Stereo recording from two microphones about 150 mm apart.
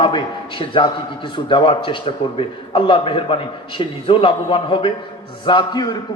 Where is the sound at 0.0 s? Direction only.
35° left (ahead or behind).